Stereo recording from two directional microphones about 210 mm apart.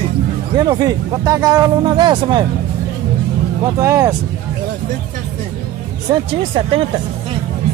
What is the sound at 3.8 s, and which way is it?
Speech, 15° right (ahead or behind).